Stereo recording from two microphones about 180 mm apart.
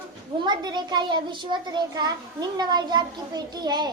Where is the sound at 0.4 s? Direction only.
25° right (ahead or behind).